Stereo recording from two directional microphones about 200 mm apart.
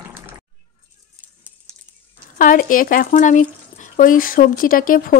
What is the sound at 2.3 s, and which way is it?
Speech, 45° left (ahead or behind).